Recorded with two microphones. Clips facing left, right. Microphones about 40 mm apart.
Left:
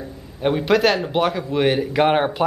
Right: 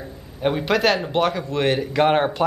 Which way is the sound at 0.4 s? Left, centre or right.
Centre.